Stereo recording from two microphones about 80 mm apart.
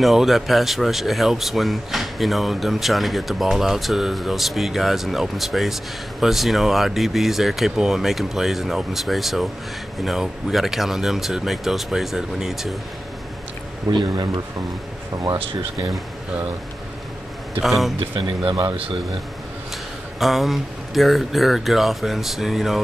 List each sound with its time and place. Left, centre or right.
0.0 s speech: centre
13.9 s speech: right
17.6 s speech: centre
18.1 s speech: right
20.2 s speech: centre